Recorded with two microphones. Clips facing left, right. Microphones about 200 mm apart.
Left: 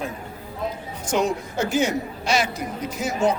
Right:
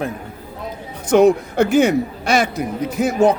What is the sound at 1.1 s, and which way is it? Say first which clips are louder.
Speech: right 11 dB; 60° right (ahead or behind).